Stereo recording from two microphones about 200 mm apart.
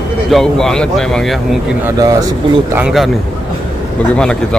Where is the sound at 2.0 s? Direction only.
20° right (ahead or behind).